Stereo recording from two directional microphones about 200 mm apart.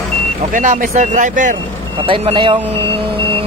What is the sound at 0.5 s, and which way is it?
Speech, 40° right (ahead or behind).